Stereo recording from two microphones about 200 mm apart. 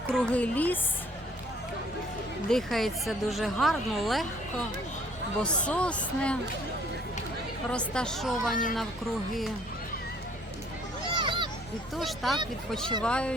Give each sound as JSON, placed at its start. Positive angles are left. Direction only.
{"t": 0.1, "sound": "a woman's voice", "side_deg": 5}
{"t": 2.5, "sound": "speech", "side_deg": 0}
{"t": 5.4, "sound": "speech", "side_deg": 5}
{"t": 7.7, "sound": "speech", "side_deg": 5}
{"t": 11.2, "sound": "a sound", "side_deg": -25}
{"t": 11.9, "sound": "speech", "side_deg": 0}